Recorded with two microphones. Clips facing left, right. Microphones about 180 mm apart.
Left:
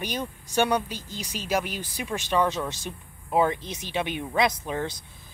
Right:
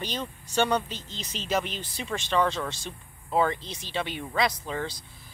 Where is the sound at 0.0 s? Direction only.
15° left (ahead or behind).